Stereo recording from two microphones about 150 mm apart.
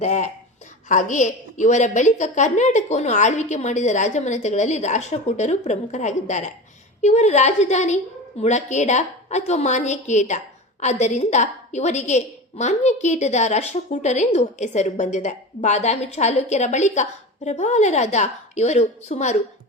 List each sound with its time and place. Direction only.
0.0 s a woman's voice: 55° left (ahead or behind)